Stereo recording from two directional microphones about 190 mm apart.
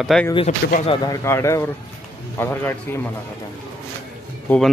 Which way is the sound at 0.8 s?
20° left (ahead or behind).